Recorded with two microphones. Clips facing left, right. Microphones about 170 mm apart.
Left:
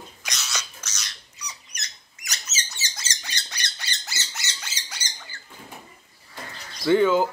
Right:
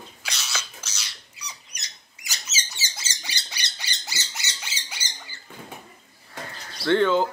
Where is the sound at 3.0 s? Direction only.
10° right (ahead or behind).